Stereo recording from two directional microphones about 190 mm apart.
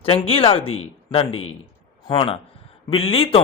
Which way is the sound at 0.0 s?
30° left (ahead or behind).